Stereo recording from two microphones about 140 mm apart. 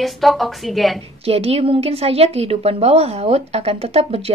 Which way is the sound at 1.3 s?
45° right (ahead or behind).